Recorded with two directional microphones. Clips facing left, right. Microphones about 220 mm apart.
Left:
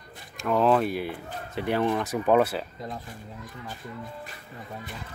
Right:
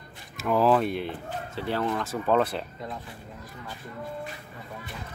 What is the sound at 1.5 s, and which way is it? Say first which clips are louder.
Speech: left 4 dB; 15° left (ahead or behind).